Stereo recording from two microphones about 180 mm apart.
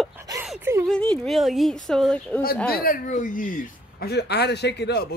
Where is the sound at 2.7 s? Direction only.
55° left (ahead or behind).